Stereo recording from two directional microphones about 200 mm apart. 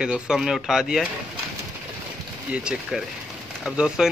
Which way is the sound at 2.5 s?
5° right (ahead or behind).